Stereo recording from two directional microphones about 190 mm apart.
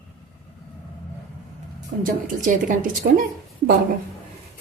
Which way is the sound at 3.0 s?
55° right (ahead or behind).